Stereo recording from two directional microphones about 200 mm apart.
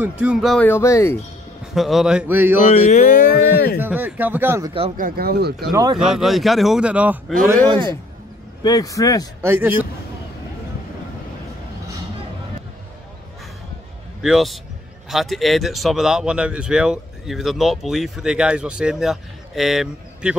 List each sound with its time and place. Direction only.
0.2 s speech: 5° right (ahead or behind); by 1.1 s 15° left (ahead or behind)
1.8 s speech: centre (ahead or behind)
2.7 s speech: 40° left (ahead or behind)
3.8 s speech: 10° right (ahead or behind)
4.9 s speech: 45° right (ahead or behind)
5.7 s speech: 20° right (ahead or behind)
6.0 s speech: centre (ahead or behind)
7.4 s speech: 20° right (ahead or behind)
8.6 s speech: 15° left (ahead or behind)
9.4 s speech: 10° right (ahead or behind)
14.2 s speech: centre (ahead or behind)